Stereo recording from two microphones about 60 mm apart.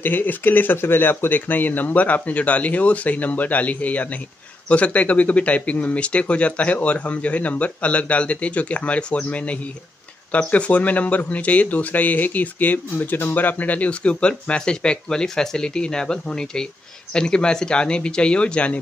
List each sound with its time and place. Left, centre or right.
0.0 s speech: left